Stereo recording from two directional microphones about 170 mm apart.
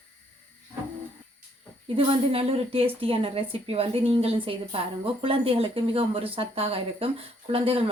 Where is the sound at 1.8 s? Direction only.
35° right (ahead or behind).